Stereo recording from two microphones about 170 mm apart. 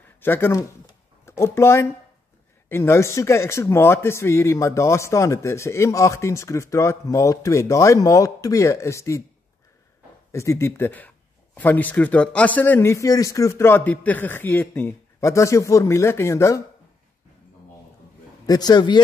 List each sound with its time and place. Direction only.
0.2 s speech: 15° left (ahead or behind)
10.3 s speech: 15° left (ahead or behind)
18.5 s a man's voice: 25° left (ahead or behind)